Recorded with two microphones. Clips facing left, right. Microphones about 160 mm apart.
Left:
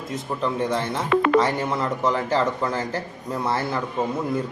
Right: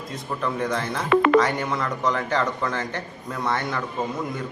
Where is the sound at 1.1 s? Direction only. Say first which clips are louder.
Right 2 dB; 70° right (ahead or behind).